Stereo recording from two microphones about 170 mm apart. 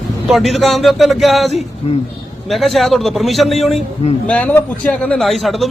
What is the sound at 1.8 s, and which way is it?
Speech, 35° left (ahead or behind).